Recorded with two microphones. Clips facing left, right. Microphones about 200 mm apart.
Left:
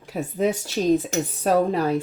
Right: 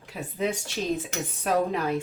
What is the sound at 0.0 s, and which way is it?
Speech, 45° left (ahead or behind).